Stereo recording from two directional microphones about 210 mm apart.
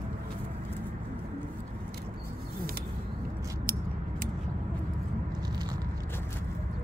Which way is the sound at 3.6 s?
45° right (ahead or behind).